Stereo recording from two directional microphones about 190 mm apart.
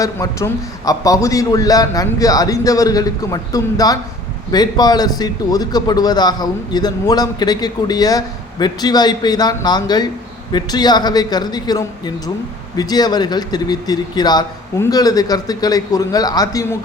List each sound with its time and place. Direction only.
0.0 s a man's voice: 15° left (ahead or behind)